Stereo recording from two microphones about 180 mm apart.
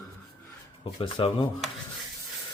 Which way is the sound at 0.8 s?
30° left (ahead or behind).